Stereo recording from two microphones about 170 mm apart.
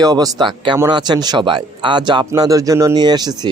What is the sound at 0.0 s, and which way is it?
Speech, 20° right (ahead or behind).